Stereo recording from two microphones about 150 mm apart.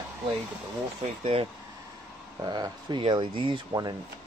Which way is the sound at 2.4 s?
25° right (ahead or behind).